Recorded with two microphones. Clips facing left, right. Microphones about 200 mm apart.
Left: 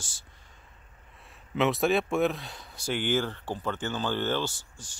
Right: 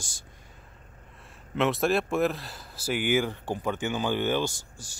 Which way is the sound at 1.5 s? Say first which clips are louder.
Even; centre (ahead or behind).